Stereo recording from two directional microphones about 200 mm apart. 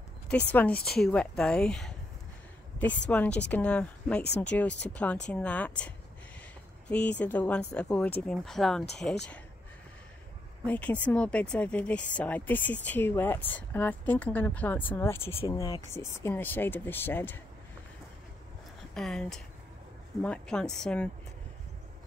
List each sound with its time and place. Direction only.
0.3 s speech: 5° left (ahead or behind)
0.7 s a woman's voice: 50° left (ahead or behind)
1.0 s speech: 5° left (ahead or behind)
3.1 s speech: 5° left (ahead or behind)
10.6 s speech: 5° left (ahead or behind)
18.9 s speech: centre (ahead or behind)